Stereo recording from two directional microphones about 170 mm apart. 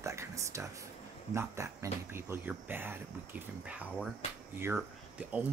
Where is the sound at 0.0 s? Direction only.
15° right (ahead or behind).